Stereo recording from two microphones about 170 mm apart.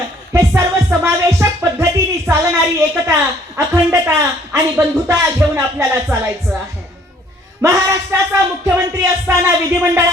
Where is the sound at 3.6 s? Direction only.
15° right (ahead or behind).